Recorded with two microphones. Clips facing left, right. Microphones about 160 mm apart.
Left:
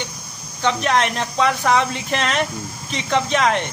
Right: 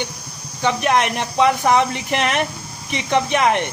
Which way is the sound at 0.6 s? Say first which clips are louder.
Right 1 dB; 15° right (ahead or behind).